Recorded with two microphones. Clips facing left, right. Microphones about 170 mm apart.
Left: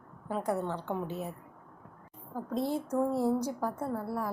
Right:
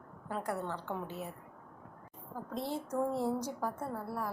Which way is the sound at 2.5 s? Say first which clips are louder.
Left 6 dB; 15° left (ahead or behind).